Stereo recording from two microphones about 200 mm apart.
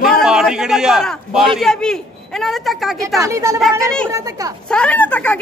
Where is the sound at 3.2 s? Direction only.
15° right (ahead or behind).